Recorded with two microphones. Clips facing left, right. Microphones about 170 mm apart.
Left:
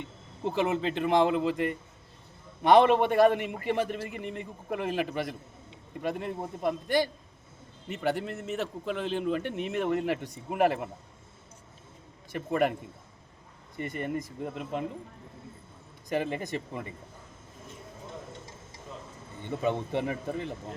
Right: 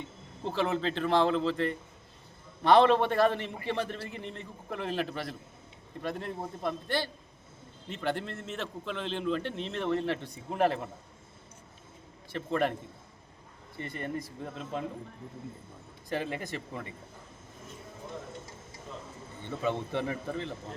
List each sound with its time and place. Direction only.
0.4 s a man's voice: 15° left (ahead or behind)
12.3 s a man's voice: 15° left (ahead or behind)
13.7 s a man's voice: 15° left (ahead or behind)
16.0 s speech: 15° left (ahead or behind)
19.5 s a man's voice: 15° left (ahead or behind)